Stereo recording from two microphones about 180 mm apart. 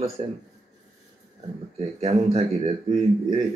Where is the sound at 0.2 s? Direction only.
35° right (ahead or behind).